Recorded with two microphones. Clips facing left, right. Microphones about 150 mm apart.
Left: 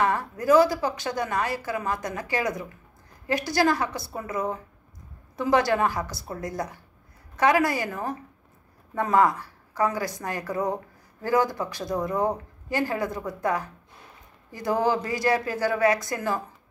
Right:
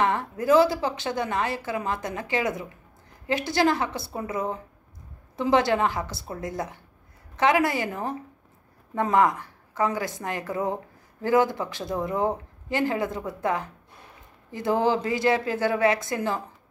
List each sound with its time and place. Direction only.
0.0 s a woman's voice: 20° right (ahead or behind)